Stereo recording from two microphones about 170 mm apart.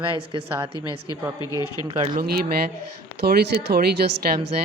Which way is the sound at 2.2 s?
60° right (ahead or behind).